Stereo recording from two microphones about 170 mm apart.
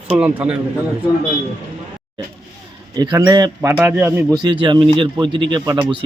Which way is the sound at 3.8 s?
10° right (ahead or behind).